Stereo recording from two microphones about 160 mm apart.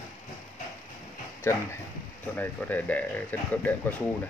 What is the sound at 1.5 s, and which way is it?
Speech, 15° left (ahead or behind).